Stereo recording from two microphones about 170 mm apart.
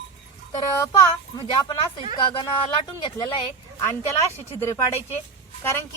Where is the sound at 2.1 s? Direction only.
25° left (ahead or behind).